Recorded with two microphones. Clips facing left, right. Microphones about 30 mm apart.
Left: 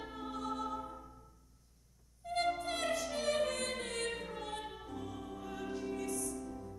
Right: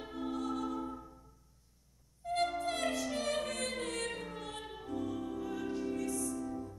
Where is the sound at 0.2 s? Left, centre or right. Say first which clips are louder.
Right 3 dB; centre.